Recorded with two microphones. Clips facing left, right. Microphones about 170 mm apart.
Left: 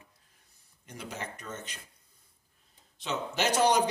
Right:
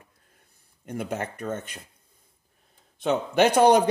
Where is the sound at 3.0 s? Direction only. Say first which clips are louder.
Right 10 dB; 55° right (ahead or behind).